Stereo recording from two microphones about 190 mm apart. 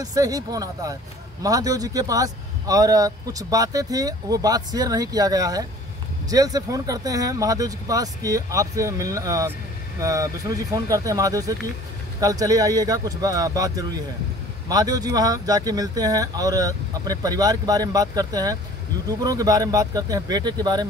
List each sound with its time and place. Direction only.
0.0 s a man's voice: 20° right (ahead or behind)